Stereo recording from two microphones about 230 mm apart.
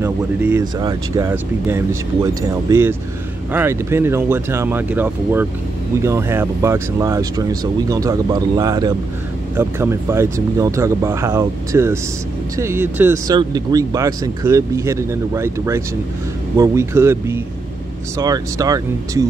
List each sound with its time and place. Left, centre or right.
0.0 s speech: centre